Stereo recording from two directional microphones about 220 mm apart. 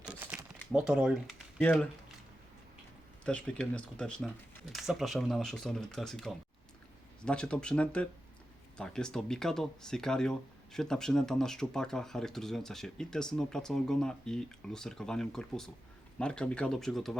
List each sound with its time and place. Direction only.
0.0 s a sound: 5° right (ahead or behind)
0.7 s speech: 5° right (ahead or behind)
3.2 s speech: 5° left (ahead or behind)